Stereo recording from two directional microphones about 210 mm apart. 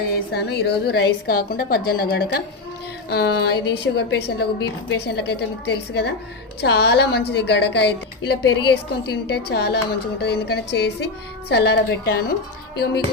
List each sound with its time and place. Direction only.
0.3 s a woman's voice: 50° left (ahead or behind)
12.7 s music: 50° left (ahead or behind)